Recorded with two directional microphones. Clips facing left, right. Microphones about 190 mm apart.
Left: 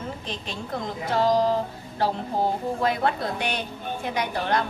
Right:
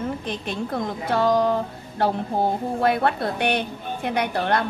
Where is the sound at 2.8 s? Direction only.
60° right (ahead or behind).